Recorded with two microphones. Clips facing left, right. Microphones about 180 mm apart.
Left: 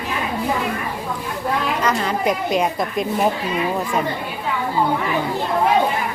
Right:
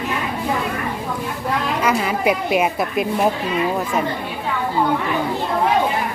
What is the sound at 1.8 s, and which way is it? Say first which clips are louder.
Speech: right 3 dB; 5° right (ahead or behind).